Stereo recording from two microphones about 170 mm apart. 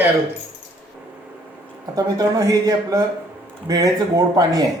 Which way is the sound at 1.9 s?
20° right (ahead or behind).